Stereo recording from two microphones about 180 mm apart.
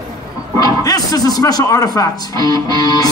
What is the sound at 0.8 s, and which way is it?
A man's voice, 20° left (ahead or behind).